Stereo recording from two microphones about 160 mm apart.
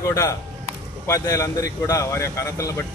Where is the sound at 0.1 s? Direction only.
20° left (ahead or behind).